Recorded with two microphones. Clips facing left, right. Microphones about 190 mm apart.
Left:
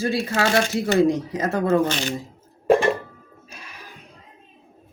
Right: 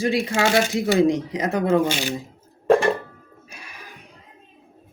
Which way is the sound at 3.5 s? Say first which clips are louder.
Even; 15° right (ahead or behind).